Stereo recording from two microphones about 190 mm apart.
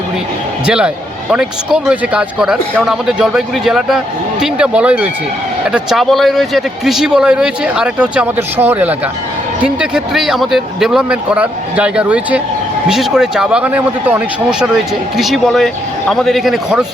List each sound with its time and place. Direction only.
0.6 s a man's voice: 5° right (ahead or behind)
15.2 s speech: centre (ahead or behind)